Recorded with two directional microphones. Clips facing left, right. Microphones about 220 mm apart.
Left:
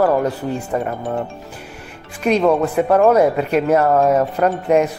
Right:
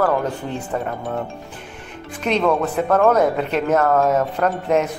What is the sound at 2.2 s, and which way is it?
Speech, 10° left (ahead or behind).